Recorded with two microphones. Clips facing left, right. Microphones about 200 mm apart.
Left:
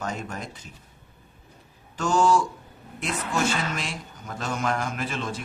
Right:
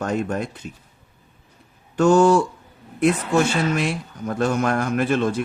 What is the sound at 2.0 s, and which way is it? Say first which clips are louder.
Speech: right 7 dB; 60° right (ahead or behind).